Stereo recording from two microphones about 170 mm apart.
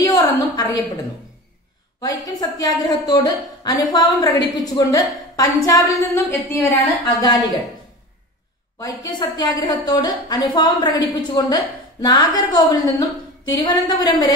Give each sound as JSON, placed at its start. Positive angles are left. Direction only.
{"t": 0.0, "sound": "a sound", "side_deg": 20}
{"t": 2.0, "sound": "a woman's voice", "side_deg": 20}
{"t": 8.7, "sound": "a woman's voice", "side_deg": 20}